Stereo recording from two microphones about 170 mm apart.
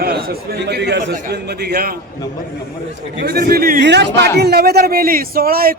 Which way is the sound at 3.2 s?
65° right (ahead or behind).